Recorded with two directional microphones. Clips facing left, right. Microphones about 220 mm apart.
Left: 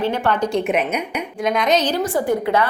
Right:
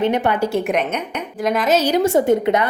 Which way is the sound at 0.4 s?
5° right (ahead or behind).